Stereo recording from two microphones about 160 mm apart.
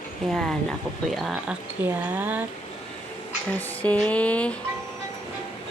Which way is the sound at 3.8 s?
5° left (ahead or behind).